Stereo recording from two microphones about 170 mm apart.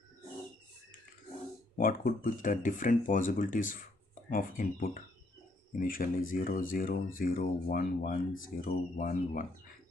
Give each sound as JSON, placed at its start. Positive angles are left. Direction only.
{"t": 1.8, "sound": "speech", "side_deg": 55}